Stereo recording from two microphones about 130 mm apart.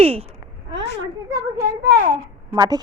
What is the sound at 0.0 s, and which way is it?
Speech, 55° right (ahead or behind).